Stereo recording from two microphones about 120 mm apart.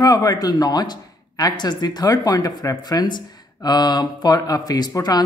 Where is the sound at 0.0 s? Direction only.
30° left (ahead or behind).